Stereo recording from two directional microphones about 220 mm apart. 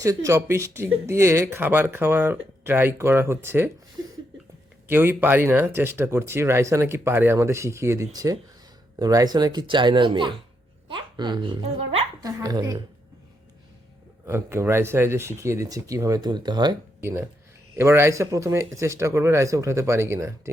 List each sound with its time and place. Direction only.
0.3 s speech: 10° right (ahead or behind)
4.9 s speech: 10° right (ahead or behind)
14.3 s speech: 10° right (ahead or behind)